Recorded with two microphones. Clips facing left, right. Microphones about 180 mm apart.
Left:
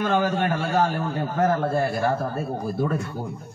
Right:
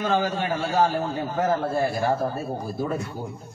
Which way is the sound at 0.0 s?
55° left (ahead or behind).